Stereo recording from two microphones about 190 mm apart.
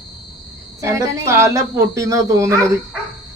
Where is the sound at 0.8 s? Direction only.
15° right (ahead or behind).